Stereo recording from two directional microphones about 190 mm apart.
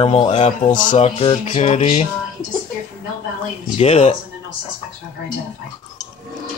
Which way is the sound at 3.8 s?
35° left (ahead or behind).